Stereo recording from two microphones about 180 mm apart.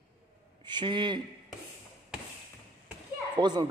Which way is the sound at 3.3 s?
25° right (ahead or behind).